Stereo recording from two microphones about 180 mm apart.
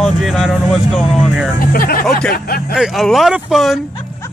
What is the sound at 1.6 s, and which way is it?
Speech, 50° left (ahead or behind).